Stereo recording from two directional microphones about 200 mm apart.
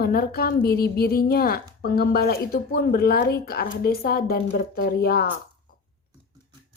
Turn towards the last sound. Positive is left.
turn(degrees=50)  # may be behind; listen again after turning